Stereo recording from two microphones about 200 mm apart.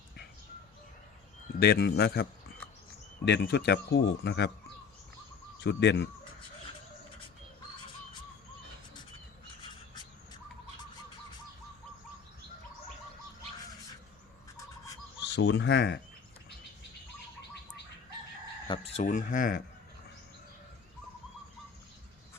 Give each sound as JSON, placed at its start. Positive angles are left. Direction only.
{"t": 1.5, "sound": "speech", "side_deg": 50}
{"t": 3.2, "sound": "speech", "side_deg": 60}
{"t": 5.5, "sound": "speech", "side_deg": 60}
{"t": 15.4, "sound": "speech", "side_deg": 60}
{"t": 18.7, "sound": "speech", "side_deg": 25}
{"t": 19.0, "sound": "speech", "side_deg": 40}